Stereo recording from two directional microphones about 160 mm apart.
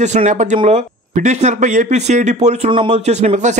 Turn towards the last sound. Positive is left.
turn(degrees=-45)  # may be behind; listen again after turning